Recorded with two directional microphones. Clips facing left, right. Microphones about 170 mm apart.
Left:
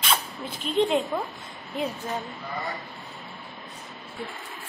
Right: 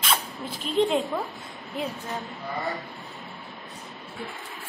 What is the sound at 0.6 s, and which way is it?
Speech, centre (ahead or behind).